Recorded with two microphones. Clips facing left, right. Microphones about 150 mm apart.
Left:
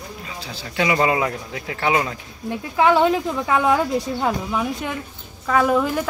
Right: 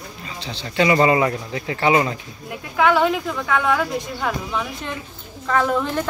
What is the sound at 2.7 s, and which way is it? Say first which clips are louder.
A woman's voice: left 1 dB; 30° left (ahead or behind).